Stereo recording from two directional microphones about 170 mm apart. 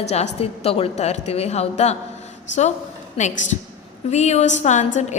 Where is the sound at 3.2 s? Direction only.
45° left (ahead or behind).